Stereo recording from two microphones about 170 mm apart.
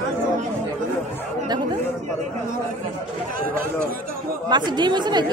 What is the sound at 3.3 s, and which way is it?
Speech, 55° right (ahead or behind).